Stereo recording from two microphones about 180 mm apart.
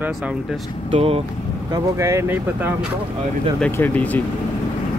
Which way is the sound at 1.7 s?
15° right (ahead or behind).